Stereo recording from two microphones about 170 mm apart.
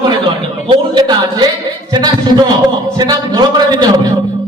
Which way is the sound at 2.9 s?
25° right (ahead or behind).